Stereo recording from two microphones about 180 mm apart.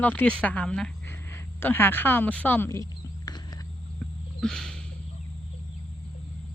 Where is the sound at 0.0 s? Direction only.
10° left (ahead or behind).